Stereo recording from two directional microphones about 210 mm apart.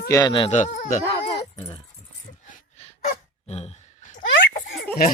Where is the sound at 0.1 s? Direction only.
20° left (ahead or behind).